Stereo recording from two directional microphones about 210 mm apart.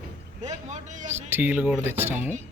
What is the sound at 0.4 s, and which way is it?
Speech, 35° right (ahead or behind).